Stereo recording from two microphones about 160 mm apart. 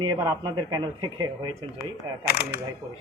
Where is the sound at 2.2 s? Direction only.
85° left.